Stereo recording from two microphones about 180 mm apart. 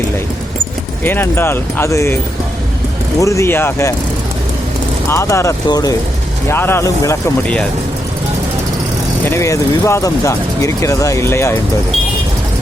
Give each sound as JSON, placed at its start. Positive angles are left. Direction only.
{"t": 1.0, "sound": "speech", "side_deg": 10}
{"t": 3.2, "sound": "speech", "side_deg": 15}
{"t": 5.0, "sound": "speech", "side_deg": 15}
{"t": 7.4, "sound": "speech", "side_deg": 5}
{"t": 9.2, "sound": "speech", "side_deg": 15}